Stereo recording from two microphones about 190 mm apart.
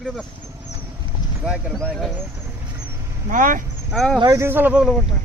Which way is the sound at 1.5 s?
5° right (ahead or behind).